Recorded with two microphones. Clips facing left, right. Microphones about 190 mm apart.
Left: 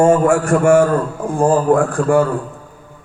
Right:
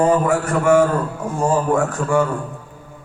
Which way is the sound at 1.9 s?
55° left (ahead or behind).